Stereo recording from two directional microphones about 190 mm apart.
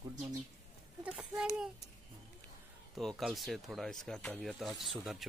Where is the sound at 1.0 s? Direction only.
5° right (ahead or behind).